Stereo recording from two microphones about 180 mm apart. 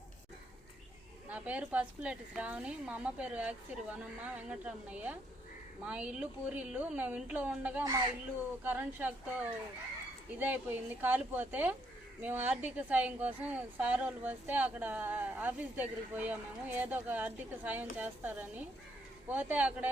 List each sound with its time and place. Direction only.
1.3 s a woman's voice: 10° right (ahead or behind)
7.9 s speech: 20° right (ahead or behind)
8.6 s a woman's voice: 10° right (ahead or behind)